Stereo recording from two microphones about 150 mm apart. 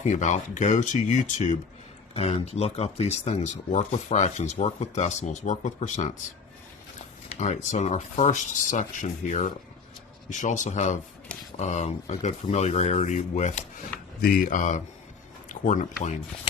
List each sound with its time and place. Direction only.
0.0 s speech: 50° left (ahead or behind)
2.1 s speech: 45° left (ahead or behind)
7.3 s speech: 50° left (ahead or behind)
14.2 s speech: 70° left (ahead or behind); by 16.2 s 50° left (ahead or behind)